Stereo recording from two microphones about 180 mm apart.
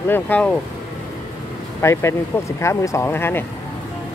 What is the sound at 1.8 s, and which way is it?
Speech, 15° left (ahead or behind).